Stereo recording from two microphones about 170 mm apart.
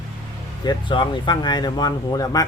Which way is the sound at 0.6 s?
25° left (ahead or behind).